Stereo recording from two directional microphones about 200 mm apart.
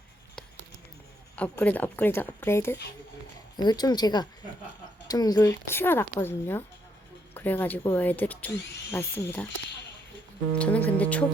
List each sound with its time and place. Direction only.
1.4 s a woman's voice: 5° left (ahead or behind)
10.6 s speech: 10° left (ahead or behind)